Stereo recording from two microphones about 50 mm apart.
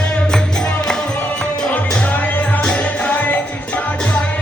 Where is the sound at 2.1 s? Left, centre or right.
Left.